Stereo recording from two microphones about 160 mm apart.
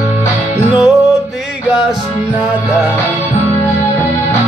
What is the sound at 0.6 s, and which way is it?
Music, 5° right (ahead or behind).